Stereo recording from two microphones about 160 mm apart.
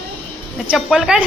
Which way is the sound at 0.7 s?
Centre (ahead or behind).